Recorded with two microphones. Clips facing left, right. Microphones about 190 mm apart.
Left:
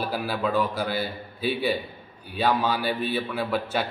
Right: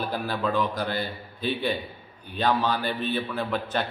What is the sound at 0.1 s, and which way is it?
A man's voice, 5° left (ahead or behind).